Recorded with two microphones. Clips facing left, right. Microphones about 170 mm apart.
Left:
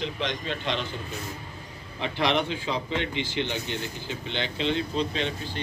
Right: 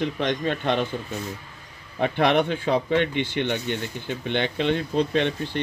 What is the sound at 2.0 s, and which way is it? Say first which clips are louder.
Speech: right 5 dB; 55° right (ahead or behind).